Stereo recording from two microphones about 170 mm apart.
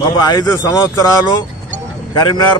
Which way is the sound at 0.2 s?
25° left (ahead or behind).